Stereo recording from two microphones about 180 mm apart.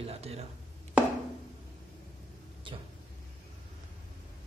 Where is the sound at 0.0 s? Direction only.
35° right (ahead or behind).